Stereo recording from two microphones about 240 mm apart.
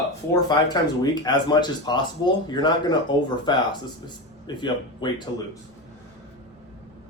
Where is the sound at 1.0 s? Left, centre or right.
Centre.